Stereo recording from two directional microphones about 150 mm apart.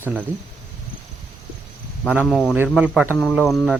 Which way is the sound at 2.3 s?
Centre (ahead or behind).